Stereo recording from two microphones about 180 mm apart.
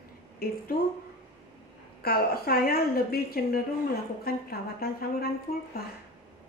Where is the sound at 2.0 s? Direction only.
55° left (ahead or behind).